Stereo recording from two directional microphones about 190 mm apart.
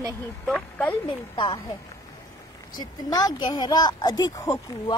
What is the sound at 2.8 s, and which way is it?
A woman's voice, 20° left (ahead or behind).